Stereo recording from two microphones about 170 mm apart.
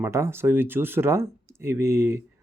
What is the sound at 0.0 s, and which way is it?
Speech, 15° right (ahead or behind).